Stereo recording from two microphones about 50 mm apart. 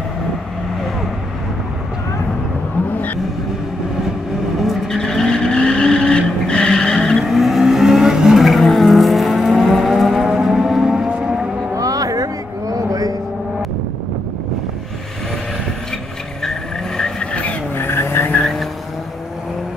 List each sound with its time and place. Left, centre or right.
4.6 s vehicle: centre
7.2 s vehicle: centre
10.3 s civil defense siren: centre
16.4 s vehicle: centre
17.7 s vehicle: left
18.4 s vehicle: centre